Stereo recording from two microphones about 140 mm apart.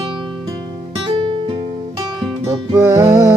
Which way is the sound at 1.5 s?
35° right (ahead or behind).